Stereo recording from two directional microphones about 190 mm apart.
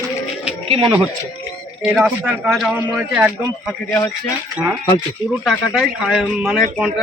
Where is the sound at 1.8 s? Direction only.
Centre (ahead or behind).